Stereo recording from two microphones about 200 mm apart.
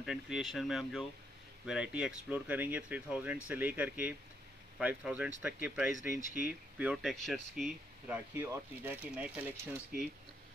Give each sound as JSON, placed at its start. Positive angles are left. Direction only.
{"t": 0.0, "sound": "speech", "side_deg": 0}
{"t": 6.1, "sound": "speech", "side_deg": 40}
{"t": 6.8, "sound": "speech", "side_deg": 0}
{"t": 8.4, "sound": "speech", "side_deg": -10}